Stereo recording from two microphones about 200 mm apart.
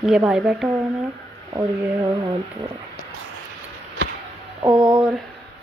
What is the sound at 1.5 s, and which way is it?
Speech, 20° right (ahead or behind).